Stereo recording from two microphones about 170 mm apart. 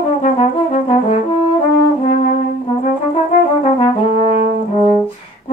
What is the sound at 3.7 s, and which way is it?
Brass instrument, 40° left (ahead or behind).